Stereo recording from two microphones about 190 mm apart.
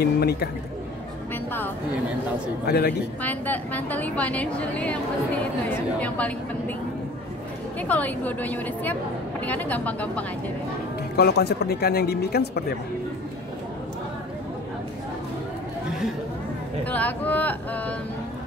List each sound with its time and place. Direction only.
0.0 s a man's voice: 55° left (ahead or behind)
1.3 s music: 10° left (ahead or behind)
2.6 s speech: 55° left (ahead or behind)
3.2 s a woman's voice: 10° left (ahead or behind)
7.9 s a woman's voice: 10° left (ahead or behind)
11.1 s speech: 60° left (ahead or behind)
16.8 s a woman's voice: 10° left (ahead or behind)